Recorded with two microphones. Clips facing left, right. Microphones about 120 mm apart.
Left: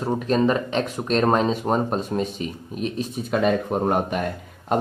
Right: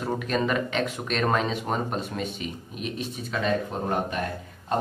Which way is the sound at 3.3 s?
55° left (ahead or behind).